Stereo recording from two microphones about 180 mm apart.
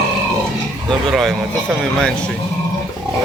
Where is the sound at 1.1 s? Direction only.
Centre (ahead or behind).